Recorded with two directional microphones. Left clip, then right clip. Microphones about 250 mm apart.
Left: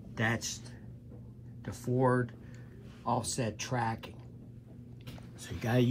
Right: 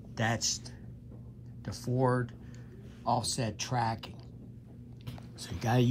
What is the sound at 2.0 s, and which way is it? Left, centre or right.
Speech, centre.